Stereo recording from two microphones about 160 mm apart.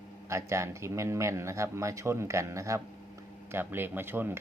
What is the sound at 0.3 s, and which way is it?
Speech, 20° right (ahead or behind).